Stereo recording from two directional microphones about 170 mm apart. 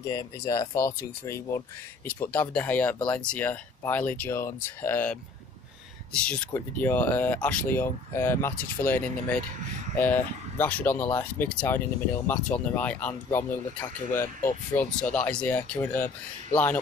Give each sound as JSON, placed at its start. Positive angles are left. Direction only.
{"t": 0.1, "sound": "speech", "side_deg": 20}